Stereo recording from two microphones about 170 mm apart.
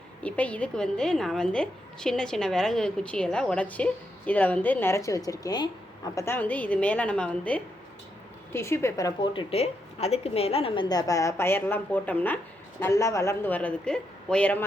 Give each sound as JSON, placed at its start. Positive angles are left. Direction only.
{"t": 0.2, "sound": "a woman's voice", "side_deg": 10}